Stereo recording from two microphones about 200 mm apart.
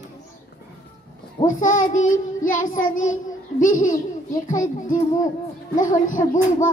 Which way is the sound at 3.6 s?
40° left (ahead or behind).